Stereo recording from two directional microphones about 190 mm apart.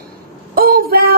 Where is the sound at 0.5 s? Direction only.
50° right (ahead or behind).